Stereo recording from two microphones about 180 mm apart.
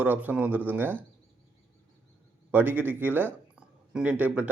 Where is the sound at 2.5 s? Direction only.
10° right (ahead or behind).